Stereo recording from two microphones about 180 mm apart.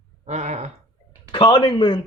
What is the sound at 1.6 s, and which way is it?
Speech, 25° left (ahead or behind).